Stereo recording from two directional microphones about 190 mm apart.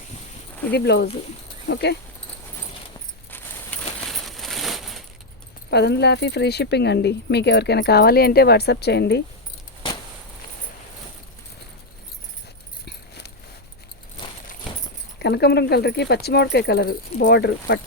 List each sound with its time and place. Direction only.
0.7 s speech: 60° left (ahead or behind)
3.3 s coin: 5° left (ahead or behind)
5.7 s speech: 60° left (ahead or behind)
12.8 s a sound: 60° left (ahead or behind)
14.2 s a sound: 20° left (ahead or behind)
15.2 s speech: 60° left (ahead or behind)